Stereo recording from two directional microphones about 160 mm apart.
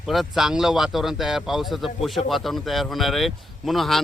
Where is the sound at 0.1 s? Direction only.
Centre (ahead or behind).